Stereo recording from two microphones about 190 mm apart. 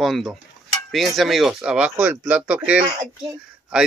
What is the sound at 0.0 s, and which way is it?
Speech, centre (ahead or behind).